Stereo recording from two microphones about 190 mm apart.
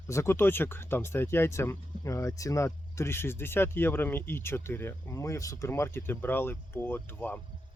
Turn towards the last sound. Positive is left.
turn(degrees=10)  # may be behind; listen again after turning